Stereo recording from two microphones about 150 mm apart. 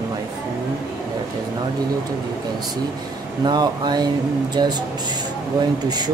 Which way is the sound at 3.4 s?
30° right (ahead or behind).